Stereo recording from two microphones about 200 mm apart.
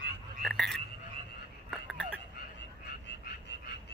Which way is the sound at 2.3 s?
60° left (ahead or behind).